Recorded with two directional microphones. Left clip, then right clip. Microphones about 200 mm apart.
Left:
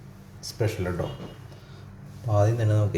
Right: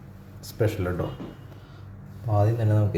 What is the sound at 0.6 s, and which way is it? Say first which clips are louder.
Speech: right 2 dB; 5° right (ahead or behind).